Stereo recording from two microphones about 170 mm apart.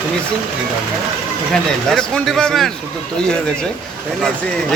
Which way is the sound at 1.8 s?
5° left (ahead or behind).